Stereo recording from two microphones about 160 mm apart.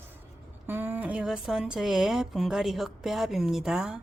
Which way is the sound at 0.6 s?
15° right (ahead or behind).